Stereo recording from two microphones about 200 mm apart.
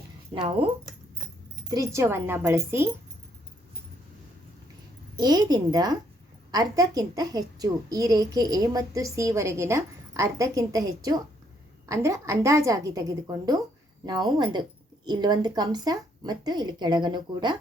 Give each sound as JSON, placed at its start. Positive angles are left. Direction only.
{"t": 0.3, "sound": "speech", "side_deg": -30}
{"t": 1.7, "sound": "a woman's voice", "side_deg": -15}
{"t": 5.1, "sound": "a woman's voice", "side_deg": -20}